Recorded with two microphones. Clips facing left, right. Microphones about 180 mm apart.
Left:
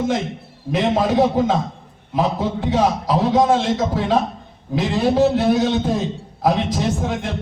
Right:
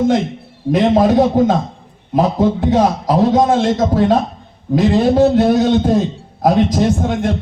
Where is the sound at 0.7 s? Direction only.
45° right (ahead or behind).